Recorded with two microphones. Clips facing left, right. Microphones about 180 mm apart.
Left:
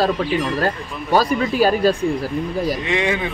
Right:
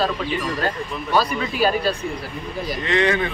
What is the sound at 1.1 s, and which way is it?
Speech, 40° left (ahead or behind).